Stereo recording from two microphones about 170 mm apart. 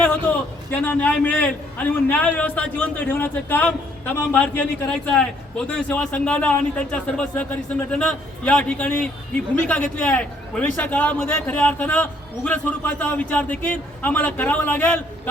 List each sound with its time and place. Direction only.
0.7 s a man's voice: 10° left (ahead or behind)